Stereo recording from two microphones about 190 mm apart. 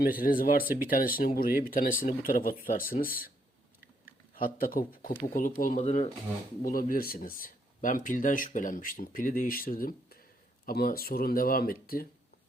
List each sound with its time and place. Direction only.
0.0 s speech: 50° left (ahead or behind)